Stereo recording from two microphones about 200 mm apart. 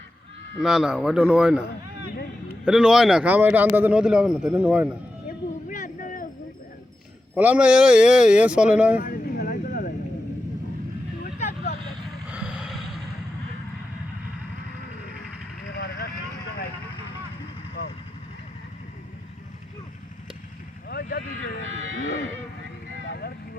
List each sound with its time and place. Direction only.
0.6 s a man's voice: 5° right (ahead or behind)
2.6 s a man's voice: 5° right (ahead or behind)
5.7 s a sound: 40° left (ahead or behind)
7.3 s a man's voice: 5° right (ahead or behind)
9.0 s a sound: 50° left (ahead or behind)
11.2 s vehicle: 35° left (ahead or behind)
12.3 s a sound: 5° right (ahead or behind)
17.8 s vehicle: 50° left (ahead or behind)
20.9 s vehicle: 50° left (ahead or behind)
23.0 s vehicle: 55° left (ahead or behind)